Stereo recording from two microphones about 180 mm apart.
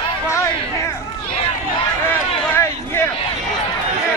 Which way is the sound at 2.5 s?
15° left (ahead or behind).